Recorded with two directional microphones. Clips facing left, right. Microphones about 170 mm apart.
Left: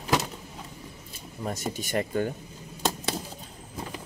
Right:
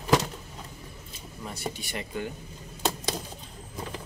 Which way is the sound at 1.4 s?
45° left (ahead or behind).